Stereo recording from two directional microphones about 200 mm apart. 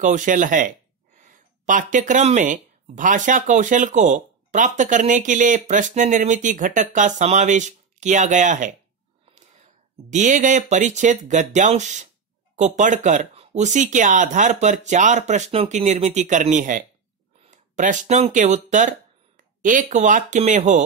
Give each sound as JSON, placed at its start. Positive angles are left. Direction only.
{"t": 0.0, "sound": "speech", "side_deg": -40}
{"t": 10.0, "sound": "speech", "side_deg": -40}